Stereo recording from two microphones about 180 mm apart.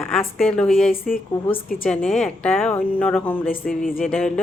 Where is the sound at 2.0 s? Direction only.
5° left (ahead or behind).